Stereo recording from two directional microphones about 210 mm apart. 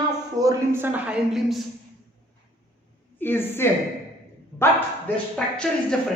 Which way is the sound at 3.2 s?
10° left (ahead or behind).